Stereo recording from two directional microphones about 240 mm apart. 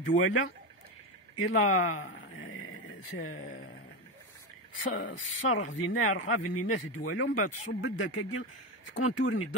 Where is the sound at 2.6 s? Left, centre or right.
Left.